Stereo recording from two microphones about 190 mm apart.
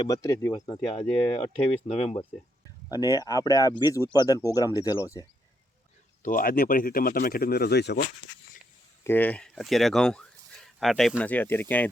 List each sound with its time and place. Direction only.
0.0 s speech: 15° left (ahead or behind); by 2.2 s 35° left (ahead or behind)
2.9 s speech: 20° left (ahead or behind)
6.2 s speech: 50° left (ahead or behind)
9.0 s speech: 10° left (ahead or behind)